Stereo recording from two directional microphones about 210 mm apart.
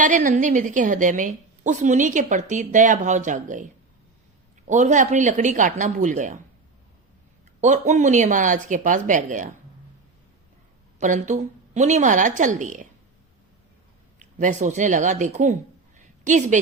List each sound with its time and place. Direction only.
0.0 s a woman's voice: 40° right (ahead or behind)
7.6 s a woman's voice: 35° right (ahead or behind)
11.0 s a woman's voice: 35° right (ahead or behind)
14.2 s a woman's voice: 35° right (ahead or behind)
16.0 s a sound: 35° right (ahead or behind)